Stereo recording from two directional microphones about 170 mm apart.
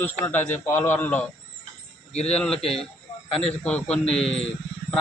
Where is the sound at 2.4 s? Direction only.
5° left (ahead or behind).